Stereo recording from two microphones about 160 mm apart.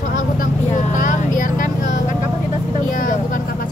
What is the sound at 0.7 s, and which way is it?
Vehicle, 50° left (ahead or behind).